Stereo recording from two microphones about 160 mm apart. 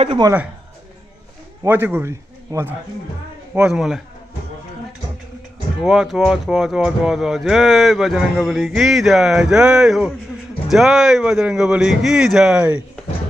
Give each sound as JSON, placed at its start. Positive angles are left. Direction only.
{"t": 0.2, "sound": "speech", "side_deg": -15}
{"t": 1.6, "sound": "a man's voice", "side_deg": -15}
{"t": 5.9, "sound": "speech", "side_deg": -5}